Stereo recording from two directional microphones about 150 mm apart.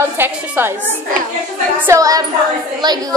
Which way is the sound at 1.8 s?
20° right (ahead or behind).